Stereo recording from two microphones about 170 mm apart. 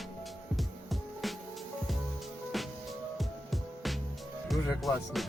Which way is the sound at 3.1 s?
Centre (ahead or behind).